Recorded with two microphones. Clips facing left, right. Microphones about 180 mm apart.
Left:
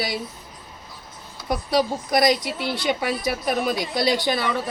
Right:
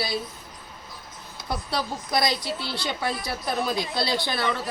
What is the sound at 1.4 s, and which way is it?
A woman's voice, 15° left (ahead or behind).